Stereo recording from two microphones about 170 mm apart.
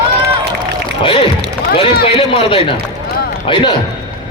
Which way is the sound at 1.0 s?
30° left (ahead or behind).